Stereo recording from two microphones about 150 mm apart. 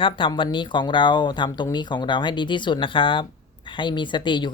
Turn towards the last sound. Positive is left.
turn(degrees=30)  # may be behind; listen again after turning